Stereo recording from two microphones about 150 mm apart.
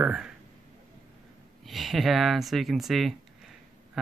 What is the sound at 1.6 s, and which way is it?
Speech, centre (ahead or behind).